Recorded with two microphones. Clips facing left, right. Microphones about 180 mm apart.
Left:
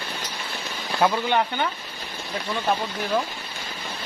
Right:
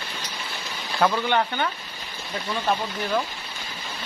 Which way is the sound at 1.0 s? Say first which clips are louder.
Even; 15° left (ahead or behind).